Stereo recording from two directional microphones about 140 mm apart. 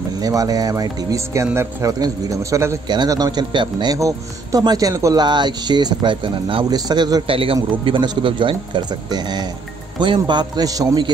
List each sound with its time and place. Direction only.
0.2 s speech: 25° right (ahead or behind)
7.2 s speech: 40° right (ahead or behind)